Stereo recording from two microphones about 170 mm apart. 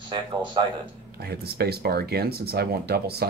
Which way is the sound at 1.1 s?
70° right (ahead or behind).